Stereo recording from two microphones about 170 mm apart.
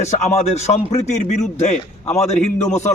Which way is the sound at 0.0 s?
40° left (ahead or behind).